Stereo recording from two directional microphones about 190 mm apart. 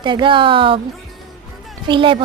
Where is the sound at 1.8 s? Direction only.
25° right (ahead or behind).